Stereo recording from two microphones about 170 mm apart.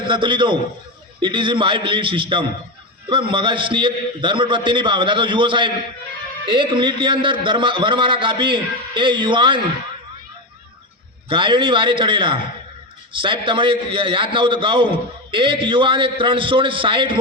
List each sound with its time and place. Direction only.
0.0 s a man's voice: 25° right (ahead or behind)
11.3 s a man's voice: 30° right (ahead or behind)